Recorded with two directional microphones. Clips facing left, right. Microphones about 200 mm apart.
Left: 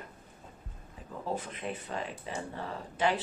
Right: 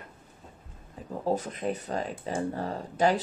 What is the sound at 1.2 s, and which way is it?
Speech, 40° right (ahead or behind).